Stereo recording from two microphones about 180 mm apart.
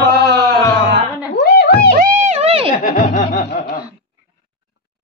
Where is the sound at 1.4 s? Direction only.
60° left (ahead or behind).